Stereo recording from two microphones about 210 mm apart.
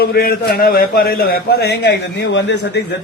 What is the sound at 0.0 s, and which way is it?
A man's voice, 45° left (ahead or behind).